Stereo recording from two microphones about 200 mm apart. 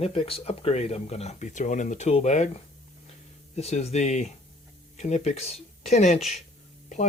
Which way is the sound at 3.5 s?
30° left (ahead or behind).